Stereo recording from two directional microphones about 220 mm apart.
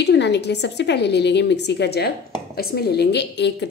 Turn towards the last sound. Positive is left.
turn(degrees=50)  # may be behind; listen again after turning